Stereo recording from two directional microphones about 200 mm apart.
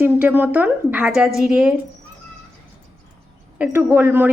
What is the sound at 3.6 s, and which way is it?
Speech, 10° right (ahead or behind).